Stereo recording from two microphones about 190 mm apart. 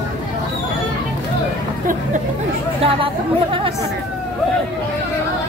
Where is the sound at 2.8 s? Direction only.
30° right (ahead or behind).